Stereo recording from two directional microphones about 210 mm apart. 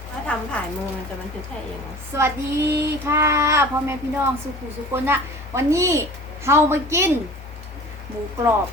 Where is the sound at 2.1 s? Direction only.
15° right (ahead or behind).